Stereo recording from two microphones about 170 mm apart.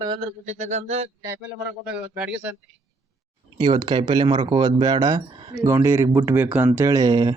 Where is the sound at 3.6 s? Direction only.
25° right (ahead or behind).